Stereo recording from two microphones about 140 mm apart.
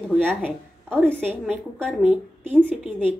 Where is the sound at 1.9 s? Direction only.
10° right (ahead or behind).